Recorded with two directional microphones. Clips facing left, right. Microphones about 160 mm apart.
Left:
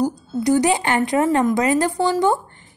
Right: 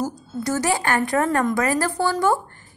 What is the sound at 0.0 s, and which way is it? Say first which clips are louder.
A woman's voice: left 6 dB; 15° left (ahead or behind).